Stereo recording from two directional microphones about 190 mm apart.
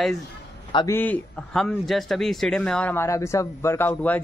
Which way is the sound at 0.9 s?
10° left (ahead or behind).